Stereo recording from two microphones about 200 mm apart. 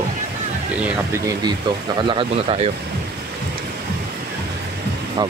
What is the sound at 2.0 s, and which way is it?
Speech, 25° right (ahead or behind).